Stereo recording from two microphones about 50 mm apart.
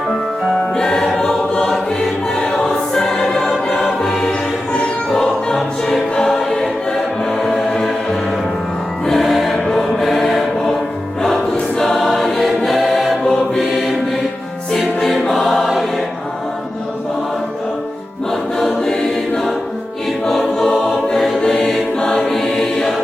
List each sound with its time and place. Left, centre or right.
0.8 s choir: centre
2.9 s music: centre
3.7 s choir: centre
4.0 s choir: centre
4.3 s music: left
6.1 s choir: centre
9.0 s choir: centre
11.8 s choir: centre
13.6 s mantra: centre
15.0 s choir: centre
18.9 s choir: centre
20.2 s choir: centre